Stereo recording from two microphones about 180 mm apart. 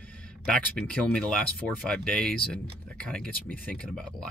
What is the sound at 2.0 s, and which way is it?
Speech, 5° left (ahead or behind).